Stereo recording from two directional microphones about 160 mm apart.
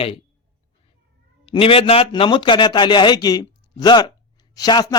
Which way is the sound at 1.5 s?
35° left (ahead or behind).